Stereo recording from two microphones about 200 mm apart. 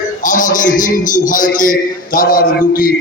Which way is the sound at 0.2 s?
40° left (ahead or behind).